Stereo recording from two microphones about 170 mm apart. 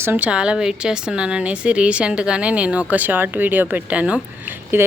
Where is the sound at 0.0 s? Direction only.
10° right (ahead or behind).